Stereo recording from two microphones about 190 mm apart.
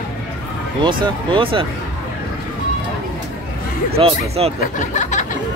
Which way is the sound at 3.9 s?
30° right (ahead or behind).